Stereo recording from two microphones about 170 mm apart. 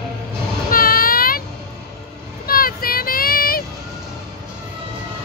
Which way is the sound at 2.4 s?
60° left (ahead or behind).